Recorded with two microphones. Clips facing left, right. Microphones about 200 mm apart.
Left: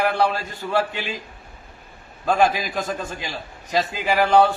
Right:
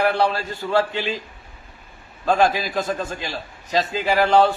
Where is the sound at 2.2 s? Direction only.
10° left (ahead or behind).